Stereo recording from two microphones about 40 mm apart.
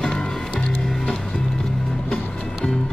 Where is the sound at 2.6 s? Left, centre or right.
Centre.